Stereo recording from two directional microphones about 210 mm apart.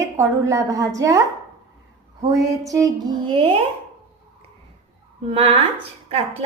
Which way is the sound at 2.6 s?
15° right (ahead or behind).